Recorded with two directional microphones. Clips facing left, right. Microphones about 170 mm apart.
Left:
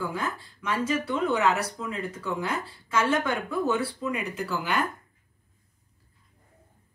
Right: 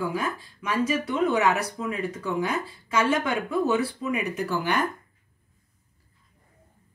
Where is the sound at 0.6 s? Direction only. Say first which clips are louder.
Right 2 dB; 15° right (ahead or behind).